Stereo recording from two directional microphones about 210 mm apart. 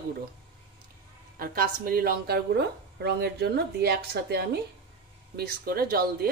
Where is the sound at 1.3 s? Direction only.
45° right (ahead or behind).